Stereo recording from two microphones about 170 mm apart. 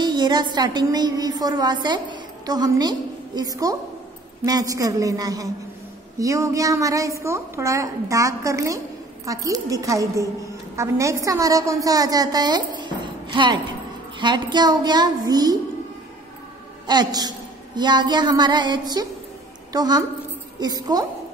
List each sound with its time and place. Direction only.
0.0 s a woman's voice: 25° right (ahead or behind)
16.8 s a woman's voice: 25° right (ahead or behind)